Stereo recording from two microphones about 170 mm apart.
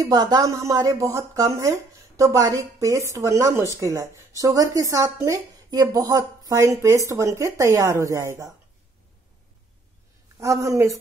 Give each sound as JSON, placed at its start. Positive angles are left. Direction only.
{"t": 0.0, "sound": "speech", "side_deg": -25}
{"t": 10.4, "sound": "a woman's voice", "side_deg": -20}